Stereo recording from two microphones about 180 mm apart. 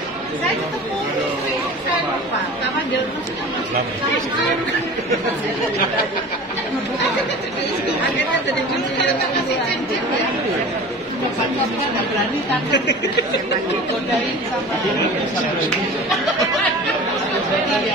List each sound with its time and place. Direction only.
12.7 s speech: 75° left (ahead or behind)